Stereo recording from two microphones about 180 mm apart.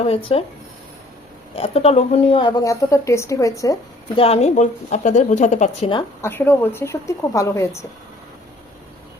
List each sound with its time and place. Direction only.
0.0 s a woman's voice: 30° left (ahead or behind)
1.5 s a woman's voice: 35° left (ahead or behind)
2.5 s a woman's voice: 15° left (ahead or behind)
4.1 s a woman's voice: 35° left (ahead or behind)
6.2 s a woman's voice: 15° left (ahead or behind)